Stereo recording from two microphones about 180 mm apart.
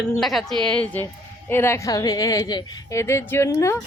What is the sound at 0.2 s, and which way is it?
A woman's voice, centre (ahead or behind).